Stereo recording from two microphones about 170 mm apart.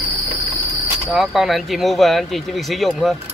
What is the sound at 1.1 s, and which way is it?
Speech, centre (ahead or behind).